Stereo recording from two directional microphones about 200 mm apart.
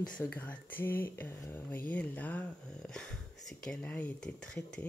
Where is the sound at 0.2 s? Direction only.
10° left (ahead or behind).